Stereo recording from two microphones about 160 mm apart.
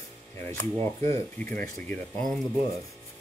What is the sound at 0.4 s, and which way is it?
Speech, 15° left (ahead or behind).